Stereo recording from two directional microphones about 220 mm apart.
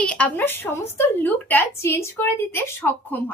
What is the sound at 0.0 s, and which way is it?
A woman's voice, 5° left (ahead or behind).